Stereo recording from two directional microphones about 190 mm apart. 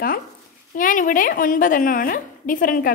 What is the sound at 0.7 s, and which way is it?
A woman's voice, 45° left (ahead or behind).